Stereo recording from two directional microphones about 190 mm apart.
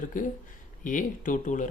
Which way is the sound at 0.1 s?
45° left (ahead or behind).